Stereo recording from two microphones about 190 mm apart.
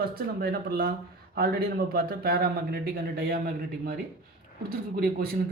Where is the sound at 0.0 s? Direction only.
55° right (ahead or behind).